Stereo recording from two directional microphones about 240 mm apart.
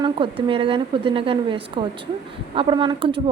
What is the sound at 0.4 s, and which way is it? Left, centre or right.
A woman's voice, right.